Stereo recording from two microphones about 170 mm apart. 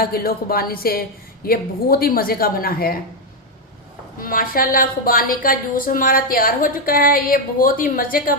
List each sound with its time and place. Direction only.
0.0 s a woman's voice: 60° left (ahead or behind)
4.2 s a woman's voice: 55° left (ahead or behind)